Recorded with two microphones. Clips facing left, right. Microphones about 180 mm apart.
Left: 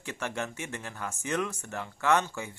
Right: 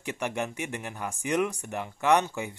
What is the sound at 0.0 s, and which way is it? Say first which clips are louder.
Speech: right 3 dB; 15° right (ahead or behind).